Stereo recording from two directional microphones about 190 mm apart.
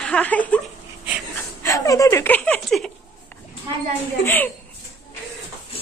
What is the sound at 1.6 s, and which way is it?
Speech, 15° left (ahead or behind).